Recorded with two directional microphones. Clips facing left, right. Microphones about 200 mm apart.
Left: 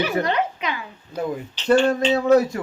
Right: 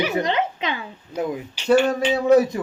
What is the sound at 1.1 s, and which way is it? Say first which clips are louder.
A man's voice: right 1 dB; 10° right (ahead or behind).